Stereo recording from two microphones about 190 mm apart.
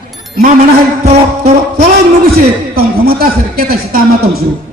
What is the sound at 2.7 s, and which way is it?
A man's voice, 55° right (ahead or behind).